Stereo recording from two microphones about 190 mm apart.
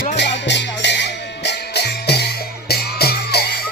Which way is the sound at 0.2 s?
65° left (ahead or behind).